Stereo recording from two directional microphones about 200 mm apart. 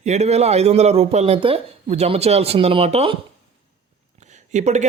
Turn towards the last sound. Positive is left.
turn(degrees=-35)  # may be behind; listen again after turning